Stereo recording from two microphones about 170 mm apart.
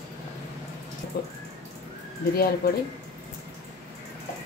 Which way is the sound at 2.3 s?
65° left (ahead or behind).